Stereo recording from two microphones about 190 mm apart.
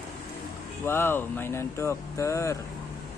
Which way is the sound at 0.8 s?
10° left (ahead or behind).